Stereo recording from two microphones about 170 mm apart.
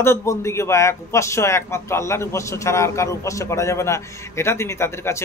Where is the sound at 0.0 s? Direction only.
15° left (ahead or behind).